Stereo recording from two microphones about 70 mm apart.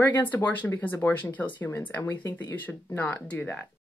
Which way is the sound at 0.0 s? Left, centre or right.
Left.